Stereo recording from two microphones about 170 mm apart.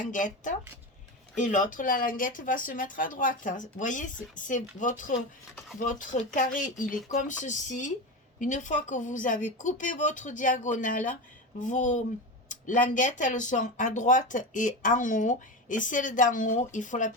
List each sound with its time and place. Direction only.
0.0 s speech: 50° left (ahead or behind)